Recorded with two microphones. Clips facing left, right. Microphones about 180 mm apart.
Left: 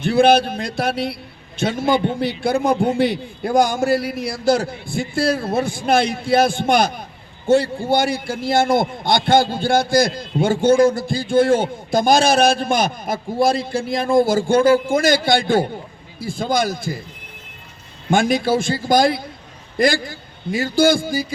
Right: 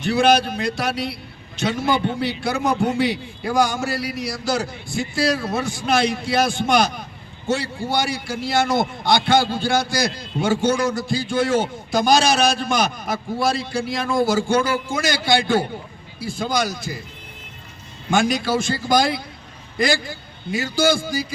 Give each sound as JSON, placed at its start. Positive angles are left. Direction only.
{"t": 0.0, "sound": "a man's voice", "side_deg": 55}
{"t": 18.1, "sound": "a man's voice", "side_deg": 55}
{"t": 20.6, "sound": "a man's voice", "side_deg": 55}